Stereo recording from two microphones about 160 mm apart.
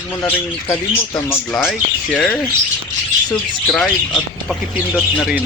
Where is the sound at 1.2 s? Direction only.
15° left (ahead or behind).